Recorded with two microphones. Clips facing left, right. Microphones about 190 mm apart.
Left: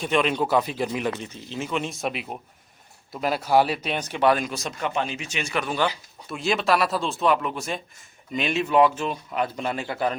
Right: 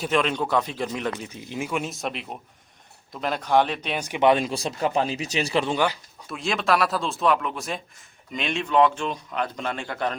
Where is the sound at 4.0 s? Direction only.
15° right (ahead or behind).